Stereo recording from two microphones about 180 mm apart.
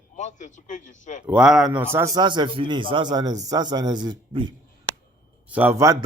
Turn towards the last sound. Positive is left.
turn(degrees=-15)  # may be behind; listen again after turning